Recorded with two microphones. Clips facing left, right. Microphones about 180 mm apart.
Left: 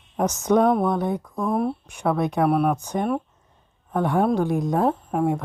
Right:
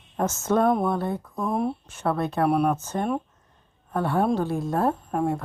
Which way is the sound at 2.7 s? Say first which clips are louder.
Left 2 dB; 15° left (ahead or behind).